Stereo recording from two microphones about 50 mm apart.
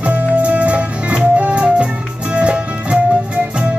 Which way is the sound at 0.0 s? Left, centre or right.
Right.